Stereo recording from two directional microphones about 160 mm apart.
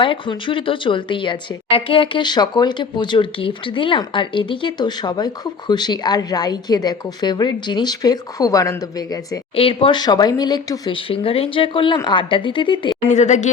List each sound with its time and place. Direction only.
0.0 s a woman's voice: 30° left (ahead or behind)
9.6 s speech: 35° left (ahead or behind)
13.1 s speech: 45° left (ahead or behind)